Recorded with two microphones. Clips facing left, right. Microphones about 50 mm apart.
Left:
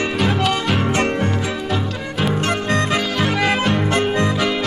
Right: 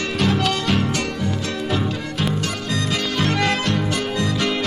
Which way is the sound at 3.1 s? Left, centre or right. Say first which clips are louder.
Right 1 dB; centre.